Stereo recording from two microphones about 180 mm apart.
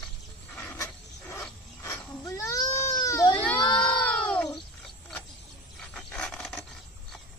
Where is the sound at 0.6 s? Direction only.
10° left (ahead or behind).